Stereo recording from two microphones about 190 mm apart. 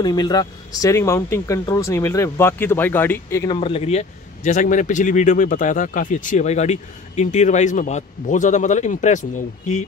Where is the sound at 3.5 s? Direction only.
30° left (ahead or behind).